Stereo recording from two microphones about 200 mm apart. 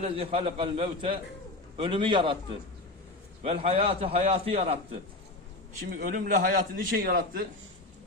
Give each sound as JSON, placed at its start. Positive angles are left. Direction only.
{"t": 0.0, "sound": "a man's voice", "side_deg": -30}
{"t": 3.4, "sound": "a man's voice", "side_deg": -30}
{"t": 5.9, "sound": "a man's voice", "side_deg": -45}